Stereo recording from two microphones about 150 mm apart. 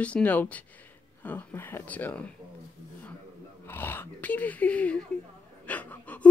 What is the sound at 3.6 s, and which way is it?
Speech, 15° left (ahead or behind).